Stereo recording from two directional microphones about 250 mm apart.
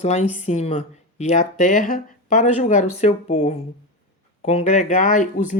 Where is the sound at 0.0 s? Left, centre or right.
Left.